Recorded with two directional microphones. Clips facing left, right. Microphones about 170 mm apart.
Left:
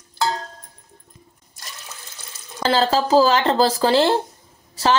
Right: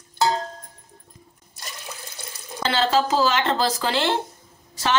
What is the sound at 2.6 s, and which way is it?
Speech, 35° left (ahead or behind).